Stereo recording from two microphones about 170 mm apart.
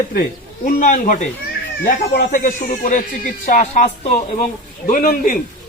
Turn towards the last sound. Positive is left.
turn(degrees=55)  # may be behind; listen again after turning